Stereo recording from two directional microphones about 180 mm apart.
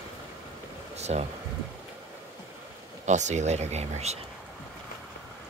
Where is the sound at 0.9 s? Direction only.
40° right (ahead or behind).